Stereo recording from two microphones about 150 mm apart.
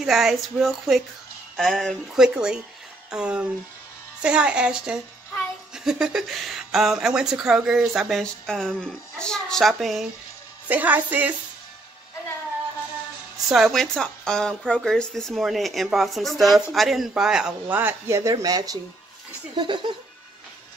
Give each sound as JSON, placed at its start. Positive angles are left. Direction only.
{"t": 0.0, "sound": "speech", "side_deg": 0}
{"t": 10.7, "sound": "speech", "side_deg": -10}
{"t": 13.5, "sound": "speech", "side_deg": 0}